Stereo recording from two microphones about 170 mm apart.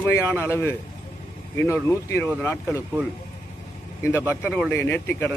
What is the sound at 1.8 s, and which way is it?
Speech, 15° left (ahead or behind).